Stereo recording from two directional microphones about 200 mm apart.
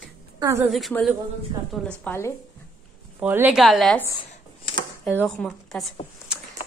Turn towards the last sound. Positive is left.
turn(degrees=0)  # may be behind; listen again after turning